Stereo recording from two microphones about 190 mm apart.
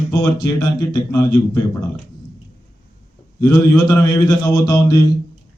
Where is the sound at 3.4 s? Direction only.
20° left (ahead or behind).